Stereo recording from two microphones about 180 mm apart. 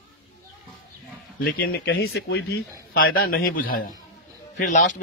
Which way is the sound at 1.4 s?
55° left (ahead or behind).